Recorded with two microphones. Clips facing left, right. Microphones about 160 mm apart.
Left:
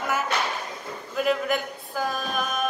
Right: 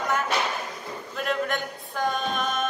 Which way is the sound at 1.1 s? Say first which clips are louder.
Left 4 dB; 5° left (ahead or behind).